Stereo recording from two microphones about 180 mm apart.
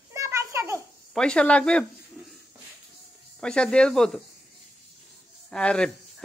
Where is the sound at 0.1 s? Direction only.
15° right (ahead or behind).